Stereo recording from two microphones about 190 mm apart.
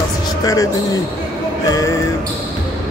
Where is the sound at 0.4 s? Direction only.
20° left (ahead or behind).